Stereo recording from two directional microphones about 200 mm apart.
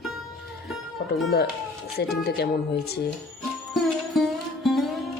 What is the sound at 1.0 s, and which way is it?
Music, 50° left (ahead or behind).